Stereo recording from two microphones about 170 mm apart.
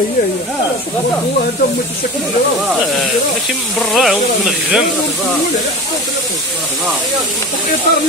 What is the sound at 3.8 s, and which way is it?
Speech, centre (ahead or behind).